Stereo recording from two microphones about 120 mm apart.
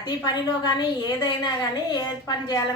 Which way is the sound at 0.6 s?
35° left (ahead or behind).